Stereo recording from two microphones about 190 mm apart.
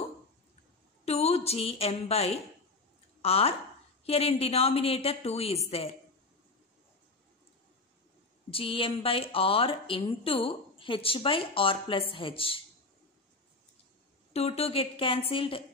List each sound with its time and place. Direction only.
1.0 s a woman's voice: 35° left (ahead or behind)
8.5 s speech: 30° left (ahead or behind)
14.3 s a woman's voice: 30° left (ahead or behind)